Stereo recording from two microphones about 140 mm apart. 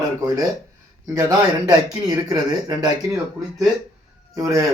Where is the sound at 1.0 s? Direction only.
25° right (ahead or behind).